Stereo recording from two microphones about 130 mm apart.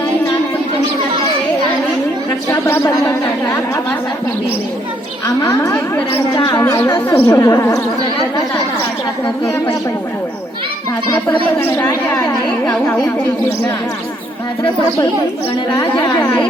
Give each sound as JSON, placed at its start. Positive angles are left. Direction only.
{"t": 2.5, "sound": "a sound", "side_deg": 20}
{"t": 5.4, "sound": "speech", "side_deg": 20}
{"t": 12.1, "sound": "speech", "side_deg": 30}
{"t": 12.7, "sound": "speech", "side_deg": 15}
{"t": 15.8, "sound": "a woman's voice", "side_deg": 35}